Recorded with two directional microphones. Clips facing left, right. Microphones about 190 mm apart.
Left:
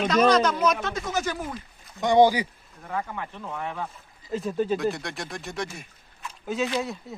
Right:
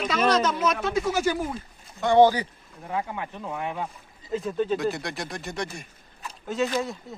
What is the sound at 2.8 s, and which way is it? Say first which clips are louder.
Speech: right 1 dB; 15° right (ahead or behind).